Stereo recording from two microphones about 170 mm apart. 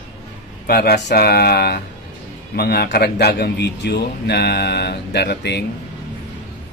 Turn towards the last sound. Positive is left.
turn(degrees=80)